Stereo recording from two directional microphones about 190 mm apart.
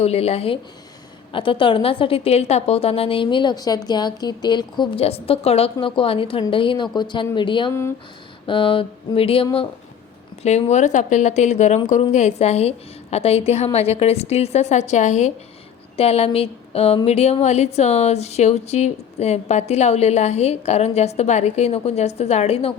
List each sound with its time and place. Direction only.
0.0 s a woman's voice: 35° left (ahead or behind)
7.7 s speech: 15° left (ahead or behind)
8.4 s a woman's voice: 25° left (ahead or behind)